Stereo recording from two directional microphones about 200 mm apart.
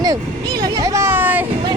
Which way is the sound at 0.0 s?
20° right (ahead or behind).